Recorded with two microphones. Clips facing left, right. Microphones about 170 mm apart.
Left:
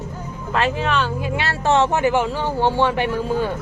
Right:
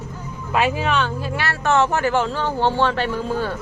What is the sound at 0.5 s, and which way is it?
Speech, 5° right (ahead or behind).